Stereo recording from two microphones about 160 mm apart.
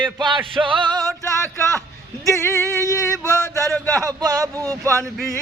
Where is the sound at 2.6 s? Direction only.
20° right (ahead or behind).